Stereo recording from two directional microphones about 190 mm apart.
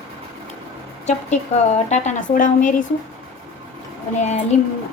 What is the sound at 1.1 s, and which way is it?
A woman's voice, 35° left (ahead or behind).